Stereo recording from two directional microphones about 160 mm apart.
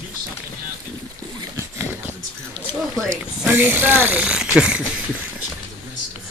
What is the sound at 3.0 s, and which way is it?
Speech, 15° right (ahead or behind).